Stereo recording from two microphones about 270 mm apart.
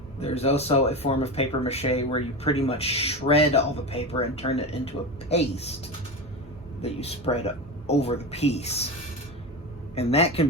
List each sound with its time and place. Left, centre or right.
0.2 s speech: left
6.8 s speech: left
9.9 s speech: left